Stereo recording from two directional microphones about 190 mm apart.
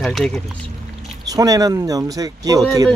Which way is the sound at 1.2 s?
20° right (ahead or behind).